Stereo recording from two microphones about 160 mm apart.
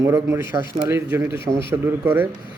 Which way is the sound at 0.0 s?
15° right (ahead or behind).